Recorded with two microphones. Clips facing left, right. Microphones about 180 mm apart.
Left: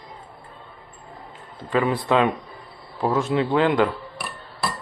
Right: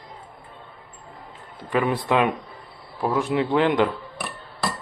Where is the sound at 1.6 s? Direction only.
20° right (ahead or behind).